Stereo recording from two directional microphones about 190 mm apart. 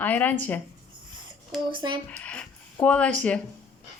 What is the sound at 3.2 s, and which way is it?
Speech, 5° left (ahead or behind).